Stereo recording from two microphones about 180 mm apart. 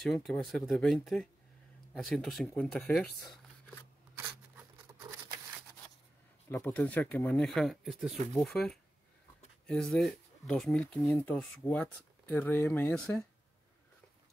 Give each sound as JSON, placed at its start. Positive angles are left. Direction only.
{"t": 0.0, "sound": "speech", "side_deg": 0}
{"t": 6.5, "sound": "speech", "side_deg": 10}